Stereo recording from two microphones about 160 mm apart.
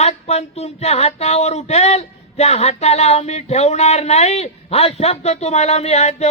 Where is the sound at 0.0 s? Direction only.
40° left (ahead or behind).